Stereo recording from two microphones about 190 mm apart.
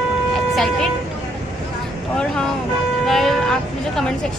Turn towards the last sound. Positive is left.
turn(degrees=0)  # may be behind; listen again after turning